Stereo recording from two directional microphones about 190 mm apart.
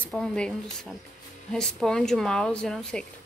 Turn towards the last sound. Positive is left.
turn(degrees=5)  # may be behind; listen again after turning